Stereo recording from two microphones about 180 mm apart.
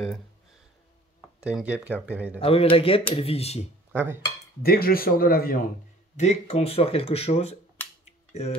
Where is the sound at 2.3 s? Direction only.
30° left (ahead or behind).